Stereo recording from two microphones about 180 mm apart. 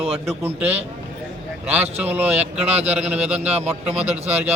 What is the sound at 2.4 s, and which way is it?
Speech, 35° right (ahead or behind).